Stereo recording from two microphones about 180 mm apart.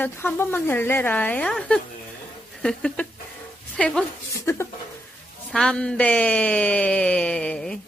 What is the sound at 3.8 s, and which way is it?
Speech, 5° left (ahead or behind).